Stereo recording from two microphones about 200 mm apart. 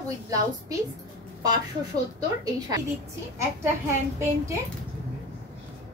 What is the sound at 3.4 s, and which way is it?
A woman's voice, 15° right (ahead or behind).